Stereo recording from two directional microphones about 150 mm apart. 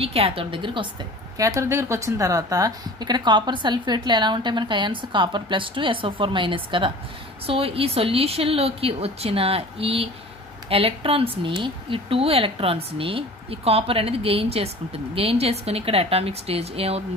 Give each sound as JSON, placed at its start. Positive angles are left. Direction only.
{"t": 0.0, "sound": "a woman's voice", "side_deg": -40}
{"t": 1.4, "sound": "a woman's voice", "side_deg": -20}